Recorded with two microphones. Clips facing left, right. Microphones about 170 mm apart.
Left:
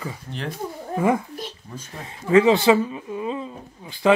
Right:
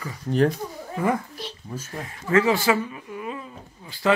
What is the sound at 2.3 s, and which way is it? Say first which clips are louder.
Speech: left 5 dB; 20° left (ahead or behind).